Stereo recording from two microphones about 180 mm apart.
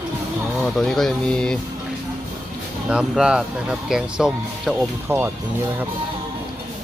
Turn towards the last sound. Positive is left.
turn(degrees=-10)  # may be behind; listen again after turning